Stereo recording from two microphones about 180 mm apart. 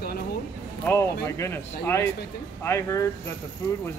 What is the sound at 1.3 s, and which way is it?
Speech, 15° left (ahead or behind).